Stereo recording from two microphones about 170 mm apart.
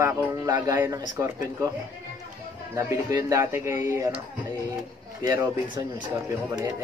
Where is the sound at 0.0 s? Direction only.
20° right (ahead or behind).